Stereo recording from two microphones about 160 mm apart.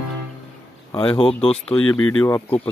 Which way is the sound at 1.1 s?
35° left (ahead or behind).